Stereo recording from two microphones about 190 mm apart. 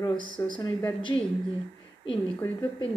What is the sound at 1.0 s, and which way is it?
Speech, 25° left (ahead or behind).